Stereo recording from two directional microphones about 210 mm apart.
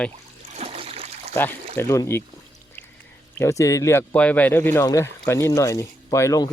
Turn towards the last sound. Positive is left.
turn(degrees=15)  # may be behind; listen again after turning